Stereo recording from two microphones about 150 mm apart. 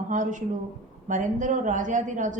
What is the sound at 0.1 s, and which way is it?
A woman's voice, 60° right (ahead or behind).